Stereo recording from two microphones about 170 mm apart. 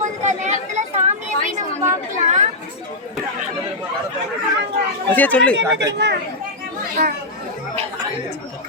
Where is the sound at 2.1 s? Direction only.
45° right (ahead or behind).